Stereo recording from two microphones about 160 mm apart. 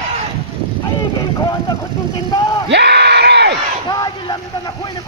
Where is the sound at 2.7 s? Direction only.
90° right.